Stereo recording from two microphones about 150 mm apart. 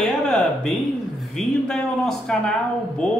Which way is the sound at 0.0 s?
5° left (ahead or behind).